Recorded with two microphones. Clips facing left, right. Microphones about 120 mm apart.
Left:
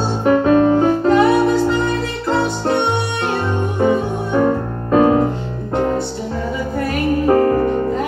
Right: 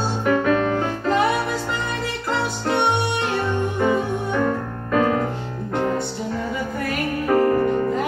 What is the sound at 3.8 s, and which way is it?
Music, 25° left (ahead or behind).